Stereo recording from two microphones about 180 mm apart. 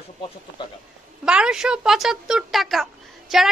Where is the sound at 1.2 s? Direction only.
5° right (ahead or behind).